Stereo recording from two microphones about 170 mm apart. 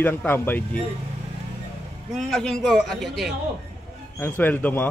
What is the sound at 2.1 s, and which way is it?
A man's voice, centre (ahead or behind).